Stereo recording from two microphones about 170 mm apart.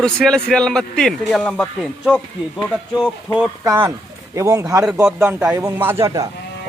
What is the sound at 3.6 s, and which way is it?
Speech, 20° right (ahead or behind).